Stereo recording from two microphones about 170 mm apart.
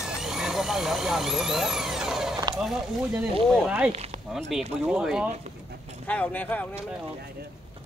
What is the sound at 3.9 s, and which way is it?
Speech, 40° right (ahead or behind).